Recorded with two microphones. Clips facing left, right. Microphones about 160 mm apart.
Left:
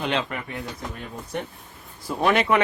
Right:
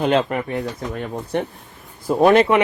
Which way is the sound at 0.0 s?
45° right (ahead or behind).